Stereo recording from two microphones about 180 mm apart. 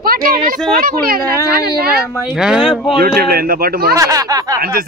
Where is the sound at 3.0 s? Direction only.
60° right (ahead or behind).